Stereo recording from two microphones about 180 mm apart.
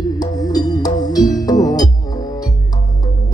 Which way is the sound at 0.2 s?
20° left (ahead or behind).